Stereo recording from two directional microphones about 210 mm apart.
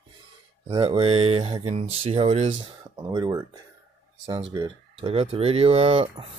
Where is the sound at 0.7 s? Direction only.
25° right (ahead or behind).